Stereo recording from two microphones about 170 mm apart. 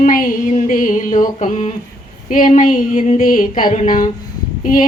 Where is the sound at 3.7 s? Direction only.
55° left (ahead or behind).